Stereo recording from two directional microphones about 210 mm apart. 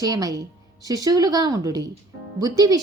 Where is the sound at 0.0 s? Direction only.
15° right (ahead or behind).